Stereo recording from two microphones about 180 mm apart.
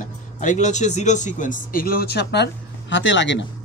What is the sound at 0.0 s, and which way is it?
Speech, 45° left (ahead or behind).